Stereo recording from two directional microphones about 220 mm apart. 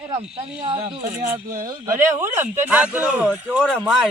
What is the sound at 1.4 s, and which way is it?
Speech, 40° right (ahead or behind).